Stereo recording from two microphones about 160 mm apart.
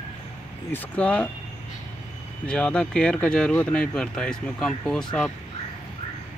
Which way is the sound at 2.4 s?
5° left (ahead or behind).